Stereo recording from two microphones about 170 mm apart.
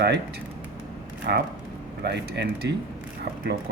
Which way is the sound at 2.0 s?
85° right.